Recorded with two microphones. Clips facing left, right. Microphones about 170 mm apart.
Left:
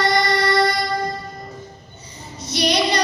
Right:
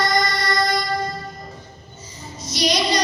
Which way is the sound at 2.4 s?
60° left (ahead or behind).